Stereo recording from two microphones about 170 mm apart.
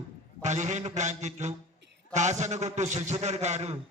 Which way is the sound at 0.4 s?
45° right (ahead or behind).